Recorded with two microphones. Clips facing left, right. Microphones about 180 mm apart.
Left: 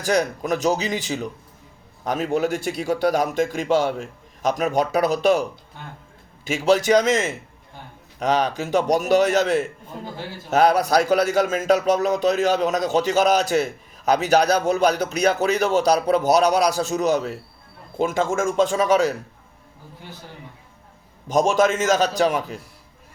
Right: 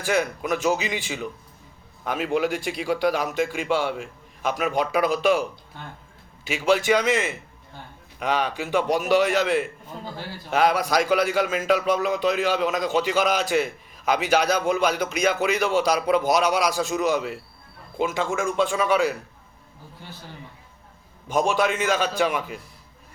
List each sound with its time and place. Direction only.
0.0 s a man's voice: 40° left (ahead or behind)
21.2 s a man's voice: 40° left (ahead or behind)